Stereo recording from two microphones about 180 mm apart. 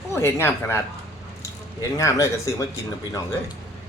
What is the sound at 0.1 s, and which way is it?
Speech, 15° left (ahead or behind).